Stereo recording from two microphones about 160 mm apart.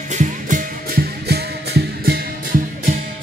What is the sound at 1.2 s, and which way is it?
Music, 85° right.